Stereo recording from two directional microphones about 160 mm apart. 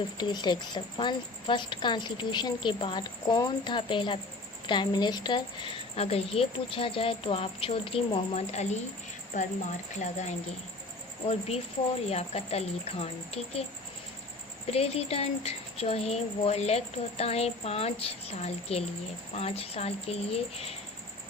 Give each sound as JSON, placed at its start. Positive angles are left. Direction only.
{"t": 0.2, "sound": "a woman's voice", "side_deg": 25}
{"t": 12.0, "sound": "a woman's voice", "side_deg": 40}
{"t": 14.7, "sound": "a woman's voice", "side_deg": 40}